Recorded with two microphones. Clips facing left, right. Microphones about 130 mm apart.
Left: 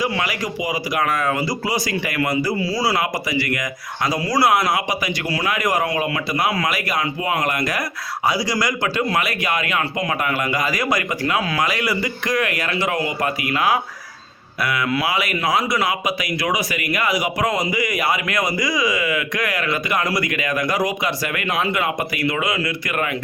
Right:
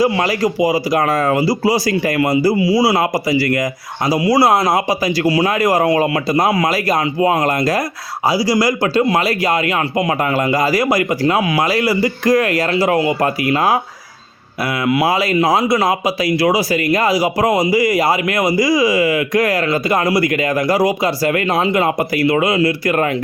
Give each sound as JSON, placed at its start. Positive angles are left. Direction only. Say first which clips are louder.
{"t": 0.0, "sound": "a man's voice", "louder": "right 8 dB", "side_deg": -35}
{"t": 15.0, "sound": "a man's voice", "louder": "right 7 dB", "side_deg": -35}